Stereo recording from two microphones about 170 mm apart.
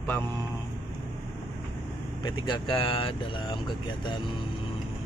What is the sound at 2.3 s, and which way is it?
Speech, 25° left (ahead or behind).